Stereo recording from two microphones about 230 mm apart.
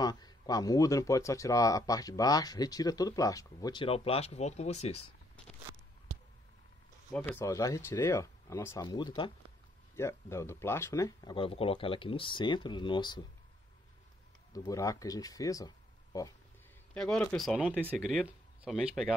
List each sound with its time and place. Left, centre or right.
0.0 s speech: centre
7.2 s speech: centre
14.5 s speech: centre
16.9 s speech: centre